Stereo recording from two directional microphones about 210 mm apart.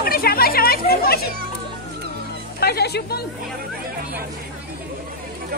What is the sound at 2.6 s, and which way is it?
Speech, 50° left (ahead or behind).